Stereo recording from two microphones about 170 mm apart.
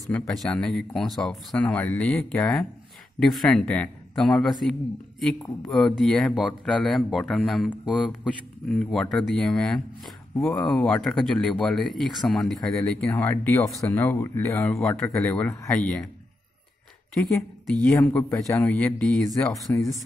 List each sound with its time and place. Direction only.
0.3 s speech: 5° left (ahead or behind)
14.7 s speech: 5° left (ahead or behind)
15.8 s speech: 5° left (ahead or behind)
18.0 s speech: 15° left (ahead or behind)
19.3 s speech: 20° left (ahead or behind)